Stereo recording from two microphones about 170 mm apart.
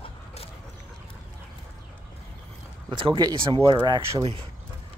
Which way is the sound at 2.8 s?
30° right (ahead or behind).